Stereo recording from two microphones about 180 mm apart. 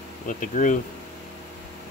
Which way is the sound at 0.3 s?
45° left (ahead or behind).